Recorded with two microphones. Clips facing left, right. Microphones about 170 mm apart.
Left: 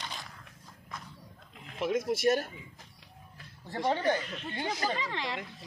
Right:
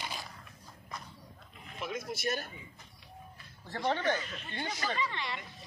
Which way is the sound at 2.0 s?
90° left.